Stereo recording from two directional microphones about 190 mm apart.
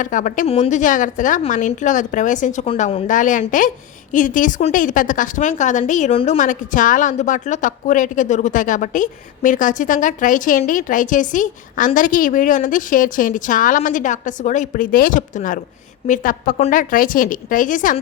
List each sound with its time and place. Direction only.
0.0 s a woman's voice: 45° left (ahead or behind)